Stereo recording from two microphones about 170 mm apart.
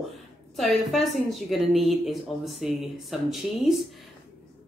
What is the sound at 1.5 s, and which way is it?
Speech, centre (ahead or behind).